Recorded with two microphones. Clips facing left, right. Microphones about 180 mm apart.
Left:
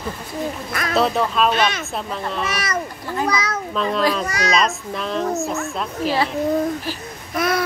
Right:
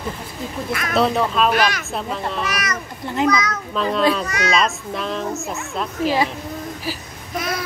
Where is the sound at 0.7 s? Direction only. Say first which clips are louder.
Right 1 dB; 35° left (ahead or behind).